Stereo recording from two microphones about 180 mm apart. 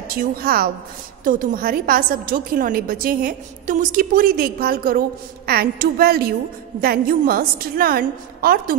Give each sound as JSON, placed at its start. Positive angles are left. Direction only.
{"t": 0.1, "sound": "a woman's voice", "side_deg": -55}